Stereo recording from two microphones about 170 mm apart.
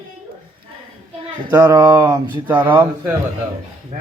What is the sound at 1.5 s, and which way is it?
Speech, 15° right (ahead or behind).